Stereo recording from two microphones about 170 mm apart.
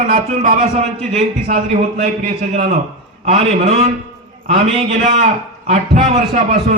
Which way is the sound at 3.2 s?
40° right (ahead or behind).